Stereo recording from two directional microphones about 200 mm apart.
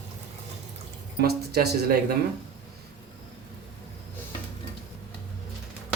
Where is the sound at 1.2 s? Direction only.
55° right (ahead or behind).